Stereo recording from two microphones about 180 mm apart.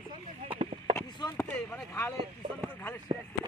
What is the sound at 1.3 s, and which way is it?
Speech, 10° left (ahead or behind).